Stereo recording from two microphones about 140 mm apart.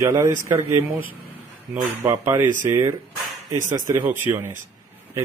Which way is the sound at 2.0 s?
20° right (ahead or behind).